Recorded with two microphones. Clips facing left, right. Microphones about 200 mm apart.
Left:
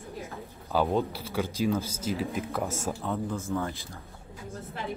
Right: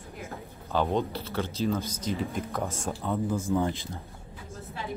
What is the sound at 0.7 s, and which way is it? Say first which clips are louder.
Speech: left 1 dB; 5° left (ahead or behind).